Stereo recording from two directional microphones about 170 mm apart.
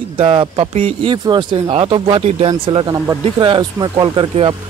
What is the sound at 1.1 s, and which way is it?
Speech, 25° right (ahead or behind).